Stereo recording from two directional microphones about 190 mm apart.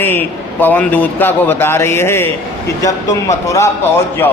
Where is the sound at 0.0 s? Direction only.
10° left (ahead or behind).